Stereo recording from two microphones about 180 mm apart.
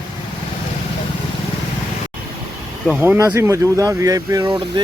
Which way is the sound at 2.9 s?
5° right (ahead or behind).